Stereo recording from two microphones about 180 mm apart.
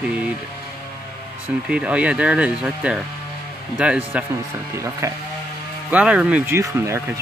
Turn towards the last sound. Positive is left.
turn(degrees=-15)  # may be behind; listen again after turning